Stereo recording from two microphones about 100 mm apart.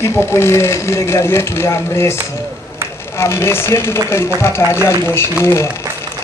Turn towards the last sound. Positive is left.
turn(degrees=25)  # may be behind; listen again after turning